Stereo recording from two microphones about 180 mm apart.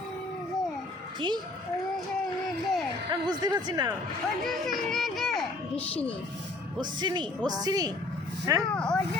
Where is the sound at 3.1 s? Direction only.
25° right (ahead or behind).